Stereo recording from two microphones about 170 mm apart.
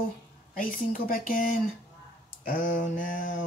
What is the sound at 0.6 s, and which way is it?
Speech, 55° left (ahead or behind).